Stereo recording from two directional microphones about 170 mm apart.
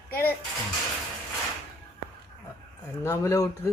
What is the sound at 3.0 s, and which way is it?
Speech, 20° left (ahead or behind).